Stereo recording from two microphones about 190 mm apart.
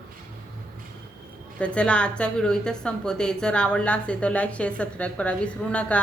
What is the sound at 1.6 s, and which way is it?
A woman's voice, 5° left (ahead or behind).